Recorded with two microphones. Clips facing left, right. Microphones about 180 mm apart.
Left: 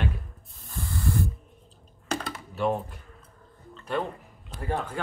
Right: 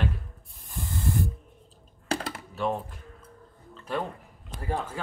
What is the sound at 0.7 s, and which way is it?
Spray, 15° right (ahead or behind).